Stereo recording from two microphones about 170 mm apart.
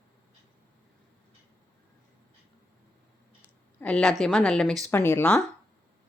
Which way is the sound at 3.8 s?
5° left (ahead or behind).